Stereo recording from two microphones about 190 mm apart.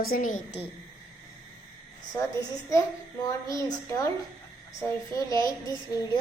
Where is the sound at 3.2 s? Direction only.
20° left (ahead or behind).